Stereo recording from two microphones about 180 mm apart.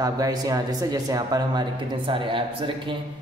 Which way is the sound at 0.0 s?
20° right (ahead or behind).